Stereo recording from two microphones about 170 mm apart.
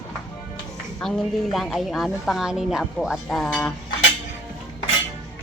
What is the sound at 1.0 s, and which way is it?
A woman's voice, centre (ahead or behind).